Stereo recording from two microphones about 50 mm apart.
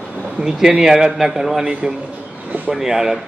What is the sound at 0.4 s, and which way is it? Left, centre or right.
A man's voice, centre.